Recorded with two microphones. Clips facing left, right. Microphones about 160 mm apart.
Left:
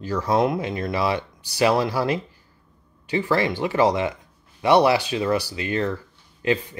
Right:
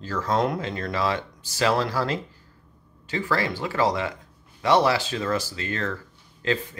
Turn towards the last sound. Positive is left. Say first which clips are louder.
# left 3 dB
turn(degrees=15)  # may be behind; listen again after turning